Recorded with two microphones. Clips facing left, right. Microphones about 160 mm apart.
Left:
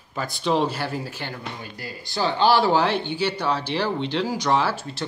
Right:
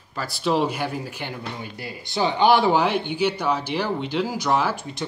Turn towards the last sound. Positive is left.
turn(degrees=-15)  # may be behind; listen again after turning